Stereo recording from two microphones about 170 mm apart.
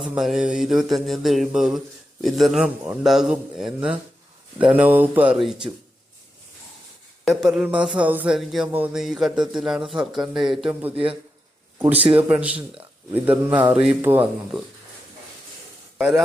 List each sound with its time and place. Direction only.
0.0 s speech: 5° right (ahead or behind)
7.3 s speech: 5° right (ahead or behind)
11.9 s speech: 35° right (ahead or behind)
12.1 s speech: 10° right (ahead or behind)
16.0 s speech: 5° right (ahead or behind)